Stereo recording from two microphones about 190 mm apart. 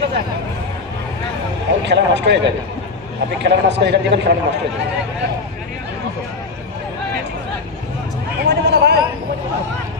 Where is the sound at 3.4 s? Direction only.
65° right (ahead or behind).